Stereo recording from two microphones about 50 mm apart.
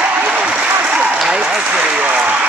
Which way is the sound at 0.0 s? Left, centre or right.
Right.